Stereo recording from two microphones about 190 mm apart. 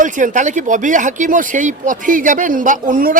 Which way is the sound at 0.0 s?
40° right (ahead or behind).